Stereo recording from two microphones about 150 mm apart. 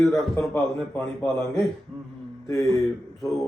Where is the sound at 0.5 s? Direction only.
15° left (ahead or behind).